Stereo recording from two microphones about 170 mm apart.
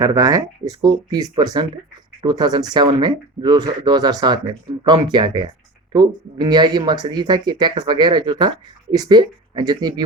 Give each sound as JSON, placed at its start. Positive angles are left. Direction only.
{"t": 0.0, "sound": "speech", "side_deg": -20}